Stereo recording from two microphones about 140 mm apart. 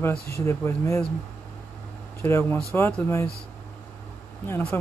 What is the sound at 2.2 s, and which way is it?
Speech, 15° left (ahead or behind).